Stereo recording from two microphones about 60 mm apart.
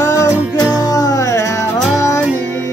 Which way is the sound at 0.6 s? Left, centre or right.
Left.